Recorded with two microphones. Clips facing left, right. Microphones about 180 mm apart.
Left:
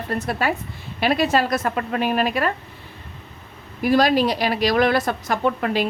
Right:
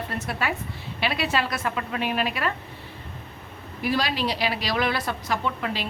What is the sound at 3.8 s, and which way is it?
A woman's voice, 45° left (ahead or behind).